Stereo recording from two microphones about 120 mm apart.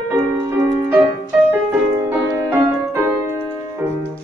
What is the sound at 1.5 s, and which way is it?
Music, 20° right (ahead or behind).